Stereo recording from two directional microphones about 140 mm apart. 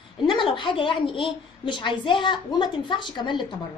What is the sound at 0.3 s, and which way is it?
A woman's voice, 35° left (ahead or behind).